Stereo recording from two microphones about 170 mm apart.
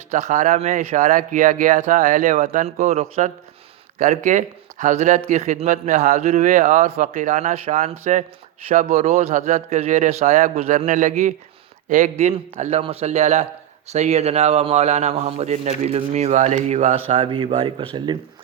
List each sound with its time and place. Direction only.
0.1 s speech: 45° right (ahead or behind); by 18.2 s 25° right (ahead or behind)